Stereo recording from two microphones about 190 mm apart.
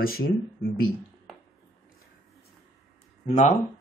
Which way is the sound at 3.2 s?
40° left (ahead or behind).